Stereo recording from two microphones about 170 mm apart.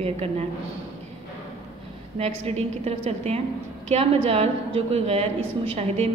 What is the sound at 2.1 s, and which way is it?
A woman's voice, 40° right (ahead or behind).